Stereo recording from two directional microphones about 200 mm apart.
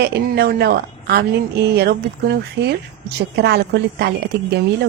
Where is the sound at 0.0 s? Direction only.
55° right (ahead or behind).